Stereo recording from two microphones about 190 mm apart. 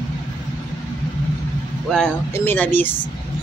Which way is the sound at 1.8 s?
5° left (ahead or behind).